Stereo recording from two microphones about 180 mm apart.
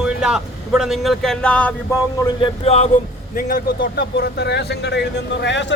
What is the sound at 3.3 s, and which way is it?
Speech, 50° left (ahead or behind).